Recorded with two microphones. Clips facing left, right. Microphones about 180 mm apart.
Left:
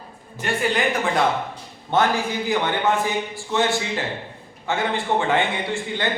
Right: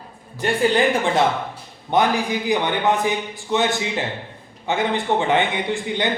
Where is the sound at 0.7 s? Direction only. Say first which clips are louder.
Right 4 dB; 25° right (ahead or behind).